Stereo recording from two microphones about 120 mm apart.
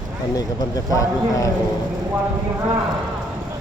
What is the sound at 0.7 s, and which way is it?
Speech, 30° left (ahead or behind).